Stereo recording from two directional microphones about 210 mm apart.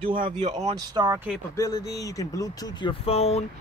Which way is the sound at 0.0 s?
25° right (ahead or behind).